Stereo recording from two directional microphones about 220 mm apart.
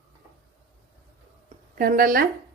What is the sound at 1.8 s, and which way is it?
Speech, 40° right (ahead or behind).